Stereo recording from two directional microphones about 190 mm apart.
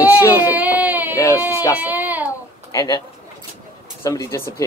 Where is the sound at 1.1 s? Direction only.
15° left (ahead or behind).